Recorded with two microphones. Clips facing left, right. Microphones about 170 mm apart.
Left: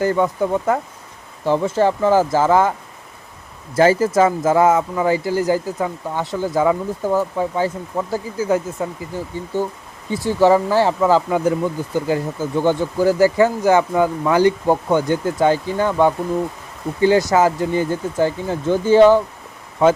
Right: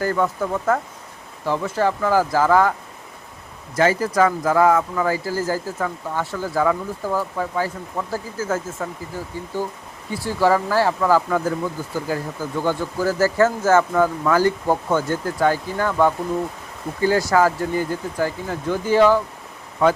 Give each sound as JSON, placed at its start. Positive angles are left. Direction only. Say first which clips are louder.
{"t": 0.0, "sound": "speech", "louder": "left 4 dB", "side_deg": 20}
{"t": 3.8, "sound": "speech", "louder": "left 4 dB", "side_deg": 25}
{"t": 10.2, "sound": "speech", "louder": "left 4 dB", "side_deg": 20}